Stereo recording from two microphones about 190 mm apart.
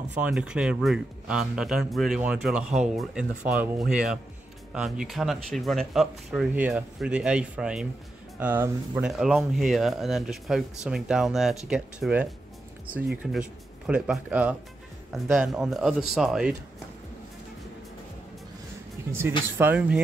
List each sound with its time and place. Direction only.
0.1 s speech: 5° right (ahead or behind)
19.6 s speech: 10° right (ahead or behind)